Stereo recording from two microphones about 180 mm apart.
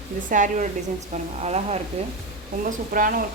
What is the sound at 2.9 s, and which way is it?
Speech, 50° right (ahead or behind).